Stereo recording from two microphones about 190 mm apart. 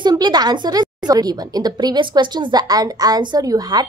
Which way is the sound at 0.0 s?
20° right (ahead or behind).